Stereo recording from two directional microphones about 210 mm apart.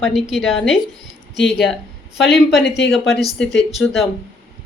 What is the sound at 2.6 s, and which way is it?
Speech, 55° left (ahead or behind).